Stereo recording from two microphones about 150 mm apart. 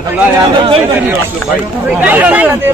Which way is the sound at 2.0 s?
10° right (ahead or behind).